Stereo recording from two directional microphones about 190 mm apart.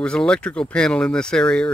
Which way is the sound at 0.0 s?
5° left (ahead or behind).